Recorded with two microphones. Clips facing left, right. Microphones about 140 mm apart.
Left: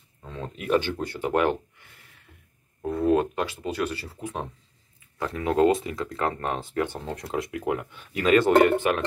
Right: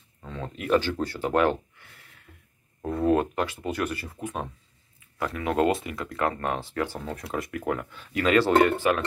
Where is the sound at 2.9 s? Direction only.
15° left (ahead or behind).